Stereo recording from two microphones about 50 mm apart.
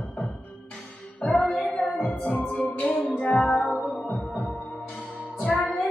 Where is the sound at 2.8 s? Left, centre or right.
Left.